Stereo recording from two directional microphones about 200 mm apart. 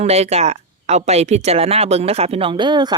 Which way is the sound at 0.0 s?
30° right (ahead or behind).